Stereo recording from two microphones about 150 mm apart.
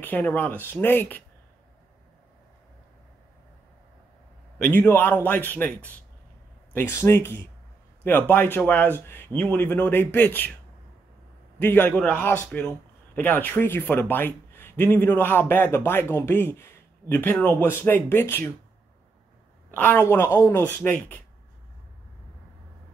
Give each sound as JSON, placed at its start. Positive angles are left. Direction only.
{"t": 0.0, "sound": "a man's voice", "side_deg": 10}
{"t": 4.6, "sound": "a man's voice", "side_deg": 10}
{"t": 11.6, "sound": "a man's voice", "side_deg": 10}
{"t": 19.7, "sound": "a man's voice", "side_deg": 10}